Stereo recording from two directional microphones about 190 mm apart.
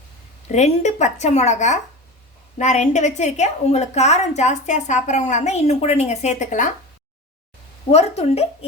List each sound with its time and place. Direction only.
0.4 s a woman's voice: 35° left (ahead or behind)
7.9 s a woman's voice: 35° left (ahead or behind)